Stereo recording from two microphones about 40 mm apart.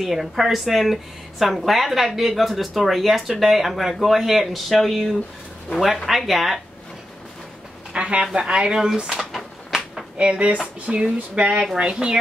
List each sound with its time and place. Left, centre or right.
0.0 s speech: centre
7.9 s speech: right
9.1 s a sound: centre
10.1 s speech: right